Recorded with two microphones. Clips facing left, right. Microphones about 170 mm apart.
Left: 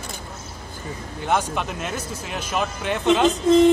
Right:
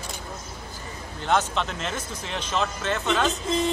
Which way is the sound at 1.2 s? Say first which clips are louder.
Left 1 dB; 10° left (ahead or behind).